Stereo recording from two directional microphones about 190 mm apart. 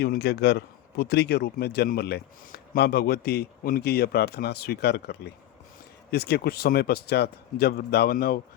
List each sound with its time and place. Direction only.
0.0 s speech: 60° left (ahead or behind)